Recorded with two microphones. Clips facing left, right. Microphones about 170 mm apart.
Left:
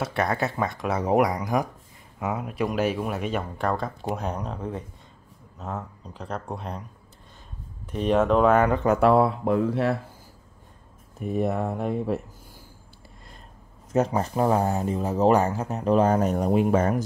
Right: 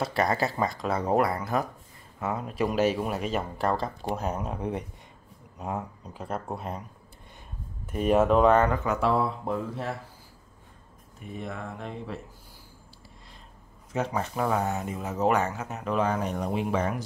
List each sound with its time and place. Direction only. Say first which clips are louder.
0.0 s speech: even; centre (ahead or behind)
0.8 s speech: left 4 dB; 10° left (ahead or behind); by 4.6 s 5° right (ahead or behind)
4.6 s speech: right 1 dB; 20° right (ahead or behind)
7.8 s speech: even; 5° right (ahead or behind)
8.8 s speech: left 7 dB; 55° left (ahead or behind); by 9.9 s 75° left (ahead or behind)
11.1 s speech: left 11 dB; 40° left (ahead or behind)
13.9 s speech: left 6 dB; 40° left (ahead or behind)